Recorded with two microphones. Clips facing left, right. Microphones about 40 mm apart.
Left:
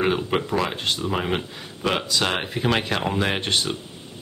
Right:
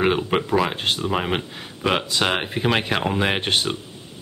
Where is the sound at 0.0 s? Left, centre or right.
Centre.